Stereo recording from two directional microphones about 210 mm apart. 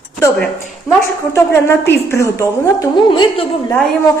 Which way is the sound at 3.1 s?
25° left (ahead or behind).